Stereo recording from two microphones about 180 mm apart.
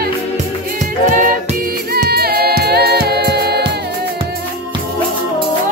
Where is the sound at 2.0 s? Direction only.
60° right (ahead or behind).